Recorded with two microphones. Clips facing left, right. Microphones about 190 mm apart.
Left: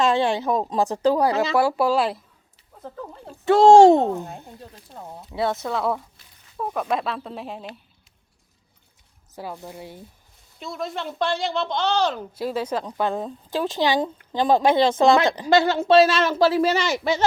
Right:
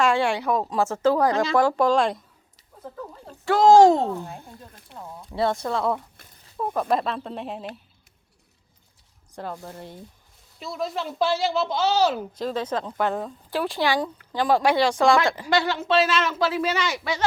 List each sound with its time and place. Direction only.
0.0 s speech: 20° left (ahead or behind); by 2.2 s 5° left (ahead or behind)
3.4 s speech: 25° left (ahead or behind)
5.2 s speech: centre (ahead or behind)
9.3 s speech: 5° left (ahead or behind)
12.3 s speech: 10° left (ahead or behind)
15.9 s speech: 40° left (ahead or behind)